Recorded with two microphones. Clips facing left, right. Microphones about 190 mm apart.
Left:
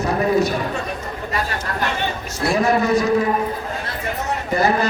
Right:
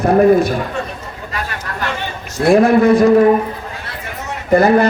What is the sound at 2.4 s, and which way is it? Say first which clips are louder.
Speech: right 8 dB; 55° right (ahead or behind).